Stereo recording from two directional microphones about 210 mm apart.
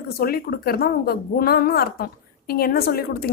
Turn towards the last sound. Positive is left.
turn(degrees=45)  # may be behind; listen again after turning